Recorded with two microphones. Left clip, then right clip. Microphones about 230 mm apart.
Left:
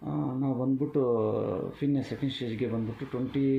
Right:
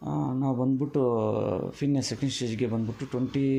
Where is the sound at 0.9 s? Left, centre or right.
Right.